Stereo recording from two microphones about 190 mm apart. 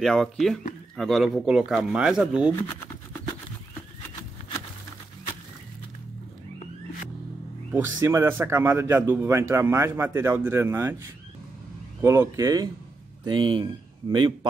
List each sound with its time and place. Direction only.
0.0 s speech: centre (ahead or behind)
7.7 s speech: 15° right (ahead or behind)